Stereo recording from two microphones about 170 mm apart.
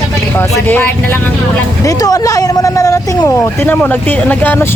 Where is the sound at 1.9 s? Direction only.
20° left (ahead or behind).